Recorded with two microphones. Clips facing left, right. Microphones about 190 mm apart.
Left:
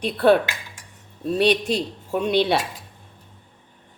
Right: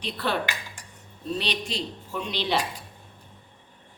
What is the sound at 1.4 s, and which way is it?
A man's voice, 55° left (ahead or behind).